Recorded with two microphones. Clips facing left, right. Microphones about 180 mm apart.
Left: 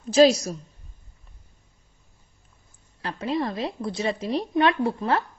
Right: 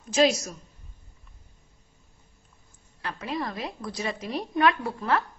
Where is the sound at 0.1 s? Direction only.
35° left (ahead or behind).